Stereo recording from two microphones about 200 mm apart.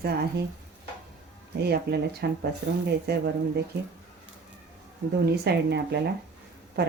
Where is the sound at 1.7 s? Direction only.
55° right (ahead or behind).